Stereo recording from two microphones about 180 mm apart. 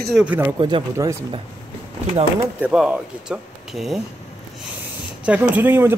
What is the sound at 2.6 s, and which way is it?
Speech, 5° right (ahead or behind).